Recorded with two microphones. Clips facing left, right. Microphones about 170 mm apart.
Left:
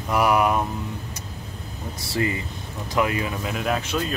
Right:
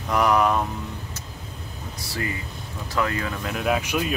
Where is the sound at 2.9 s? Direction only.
15° left (ahead or behind).